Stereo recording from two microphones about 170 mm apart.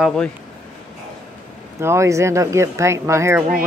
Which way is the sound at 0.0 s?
5° left (ahead or behind).